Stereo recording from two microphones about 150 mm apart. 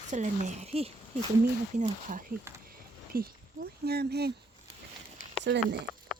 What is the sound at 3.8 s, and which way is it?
Speech, 90° right.